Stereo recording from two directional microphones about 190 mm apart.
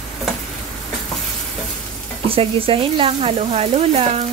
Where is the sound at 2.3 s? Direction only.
30° right (ahead or behind).